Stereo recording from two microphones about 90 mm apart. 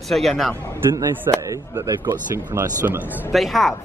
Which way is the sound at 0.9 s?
40° right (ahead or behind).